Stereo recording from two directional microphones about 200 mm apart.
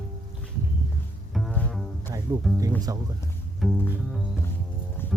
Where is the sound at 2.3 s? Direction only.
20° right (ahead or behind).